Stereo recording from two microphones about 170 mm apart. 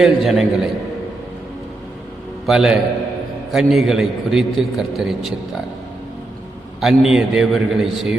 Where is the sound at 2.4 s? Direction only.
Centre (ahead or behind).